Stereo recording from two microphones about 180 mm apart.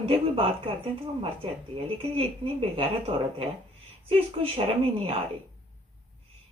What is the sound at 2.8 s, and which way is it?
A woman's voice, 35° right (ahead or behind).